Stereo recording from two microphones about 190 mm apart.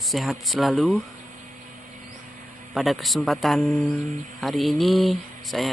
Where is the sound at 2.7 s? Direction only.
Centre (ahead or behind).